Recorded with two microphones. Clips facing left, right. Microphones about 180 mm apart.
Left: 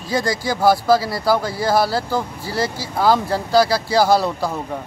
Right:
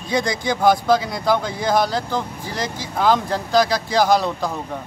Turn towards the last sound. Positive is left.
turn(degrees=5)  # may be behind; listen again after turning